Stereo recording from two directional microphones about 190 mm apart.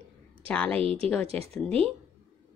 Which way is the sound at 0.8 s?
30° right (ahead or behind).